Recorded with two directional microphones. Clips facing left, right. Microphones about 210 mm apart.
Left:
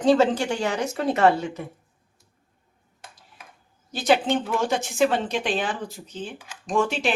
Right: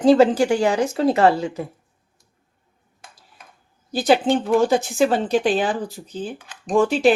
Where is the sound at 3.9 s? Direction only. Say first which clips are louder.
Right 4 dB; 35° right (ahead or behind).